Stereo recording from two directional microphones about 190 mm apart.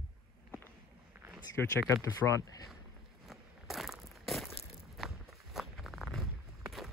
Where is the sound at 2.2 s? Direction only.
15° left (ahead or behind).